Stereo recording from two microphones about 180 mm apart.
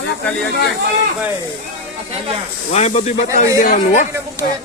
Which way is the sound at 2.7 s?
40° left (ahead or behind).